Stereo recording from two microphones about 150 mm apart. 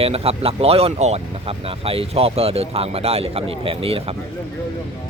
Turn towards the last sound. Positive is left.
turn(degrees=-40)  # may be behind; listen again after turning